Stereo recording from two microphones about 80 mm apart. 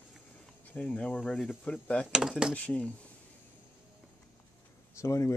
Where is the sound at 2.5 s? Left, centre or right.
Centre.